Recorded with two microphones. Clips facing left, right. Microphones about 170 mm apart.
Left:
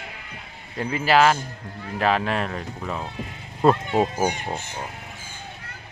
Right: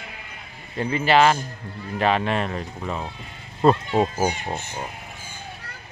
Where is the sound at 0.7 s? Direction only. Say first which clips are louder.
Right 1 dB; 5° left (ahead or behind).